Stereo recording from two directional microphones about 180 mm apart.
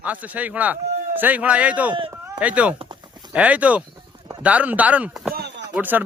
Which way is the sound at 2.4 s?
5° right (ahead or behind).